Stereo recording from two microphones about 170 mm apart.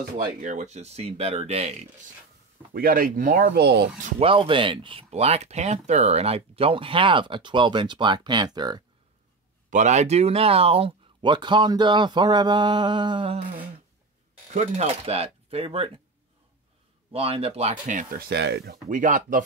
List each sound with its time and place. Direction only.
0.0 s speech: 50° right (ahead or behind)
2.7 s speech: 60° right (ahead or behind); by 3.9 s 75° right (ahead or behind)
4.2 s speech: 30° right (ahead or behind)
9.7 s speech: 45° right (ahead or behind); by 13.4 s 30° right (ahead or behind)
14.5 s speech: 45° right (ahead or behind)
17.1 s speech: 35° right (ahead or behind)
18.3 s speech: 80° right
18.9 s speech: 50° right (ahead or behind)